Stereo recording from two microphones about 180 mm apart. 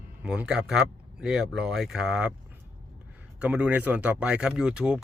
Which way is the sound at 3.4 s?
10° right (ahead or behind).